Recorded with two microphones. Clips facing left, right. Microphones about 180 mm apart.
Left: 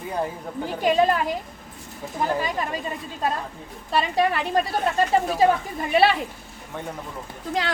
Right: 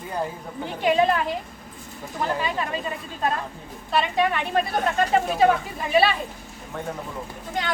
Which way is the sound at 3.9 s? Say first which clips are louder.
Left 1 dB; 35° left (ahead or behind).